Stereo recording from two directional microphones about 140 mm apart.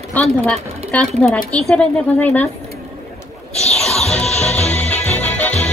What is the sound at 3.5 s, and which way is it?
Music, 50° left (ahead or behind).